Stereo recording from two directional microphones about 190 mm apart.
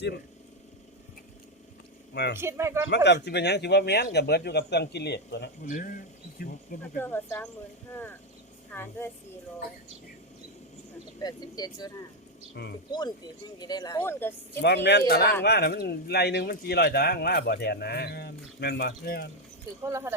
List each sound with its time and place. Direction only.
2.4 s speech: 15° right (ahead or behind)
2.9 s speech: 65° left (ahead or behind)
5.6 s speech: 45° left (ahead or behind)
7.0 s speech: 10° left (ahead or behind)
8.7 s speech: 10° left (ahead or behind)
11.2 s speech: 20° left (ahead or behind)
12.6 s speech: 60° left (ahead or behind)
12.9 s speech: 20° left (ahead or behind)
14.6 s speech: 60° left (ahead or behind)
19.8 s speech: 15° right (ahead or behind)